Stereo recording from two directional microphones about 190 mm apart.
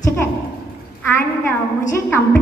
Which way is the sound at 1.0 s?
10° left (ahead or behind).